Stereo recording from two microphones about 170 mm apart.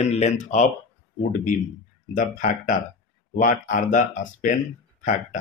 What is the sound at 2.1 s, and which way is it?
Speech, 50° left (ahead or behind).